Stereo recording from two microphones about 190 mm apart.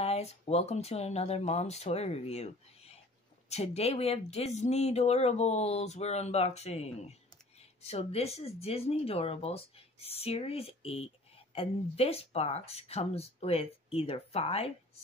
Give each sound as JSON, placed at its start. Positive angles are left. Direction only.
{"t": 0.0, "sound": "speech", "side_deg": 35}